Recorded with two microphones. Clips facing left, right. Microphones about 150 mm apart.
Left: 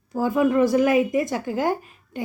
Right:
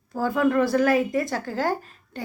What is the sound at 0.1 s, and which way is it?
Speech, 15° left (ahead or behind).